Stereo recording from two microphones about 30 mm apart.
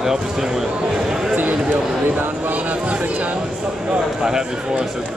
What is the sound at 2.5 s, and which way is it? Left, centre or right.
Speech, right.